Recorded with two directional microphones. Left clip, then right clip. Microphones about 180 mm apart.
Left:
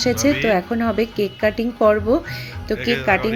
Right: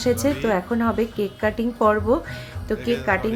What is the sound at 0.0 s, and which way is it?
A woman's voice, 10° left (ahead or behind).